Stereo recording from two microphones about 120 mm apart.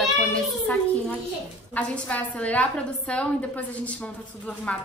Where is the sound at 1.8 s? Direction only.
10° left (ahead or behind).